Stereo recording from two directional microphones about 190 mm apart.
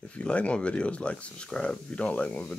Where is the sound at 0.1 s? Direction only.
5° left (ahead or behind).